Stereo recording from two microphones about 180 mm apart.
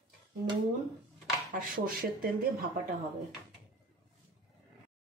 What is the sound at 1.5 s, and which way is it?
Speech, 50° right (ahead or behind).